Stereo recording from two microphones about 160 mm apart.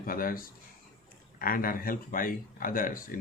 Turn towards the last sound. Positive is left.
turn(degrees=60)  # may be behind; listen again after turning